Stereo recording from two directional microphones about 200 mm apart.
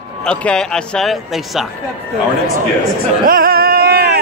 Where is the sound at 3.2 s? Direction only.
45° right (ahead or behind).